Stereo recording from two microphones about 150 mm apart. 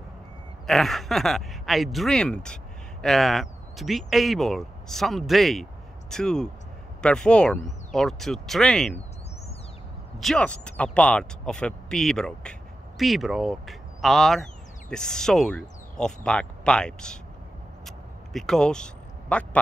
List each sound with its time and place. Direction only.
0.7 s speech: centre (ahead or behind)
10.1 s speech: centre (ahead or behind)
17.8 s a sound: centre (ahead or behind)